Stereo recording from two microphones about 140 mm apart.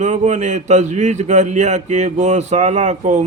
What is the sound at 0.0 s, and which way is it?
A man's voice, 60° right (ahead or behind).